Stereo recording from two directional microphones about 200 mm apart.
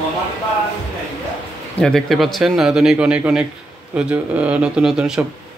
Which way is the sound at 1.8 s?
Centre (ahead or behind).